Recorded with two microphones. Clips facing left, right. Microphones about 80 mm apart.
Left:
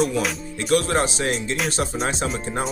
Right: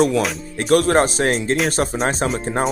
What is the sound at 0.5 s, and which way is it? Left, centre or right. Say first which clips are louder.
Speech: right 6 dB; right.